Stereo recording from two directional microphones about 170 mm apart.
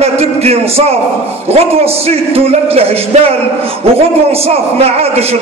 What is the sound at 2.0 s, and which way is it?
Music, 35° right (ahead or behind).